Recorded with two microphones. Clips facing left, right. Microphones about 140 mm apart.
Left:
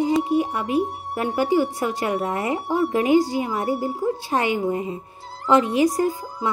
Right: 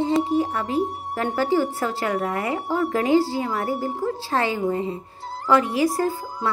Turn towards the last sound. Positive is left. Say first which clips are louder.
# left 1 dB
turn(degrees=20)  # may be behind; listen again after turning